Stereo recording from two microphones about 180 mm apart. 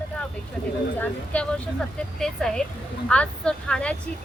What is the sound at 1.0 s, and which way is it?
Speech, 5° left (ahead or behind).